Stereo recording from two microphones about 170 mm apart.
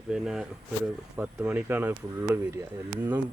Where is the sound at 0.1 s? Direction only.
5° right (ahead or behind).